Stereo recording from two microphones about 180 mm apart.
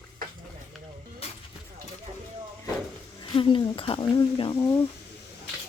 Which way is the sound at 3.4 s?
30° left (ahead or behind).